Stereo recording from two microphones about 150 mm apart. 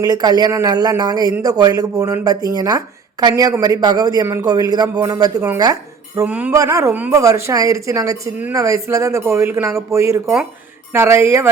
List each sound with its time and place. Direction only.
0.0 s speech: 25° right (ahead or behind)
6.2 s speech: 10° right (ahead or behind)